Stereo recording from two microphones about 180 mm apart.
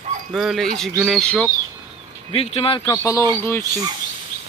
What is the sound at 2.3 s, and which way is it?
Speech, 35° left (ahead or behind).